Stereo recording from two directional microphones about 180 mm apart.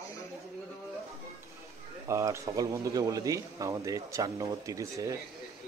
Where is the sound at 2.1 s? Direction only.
15° right (ahead or behind).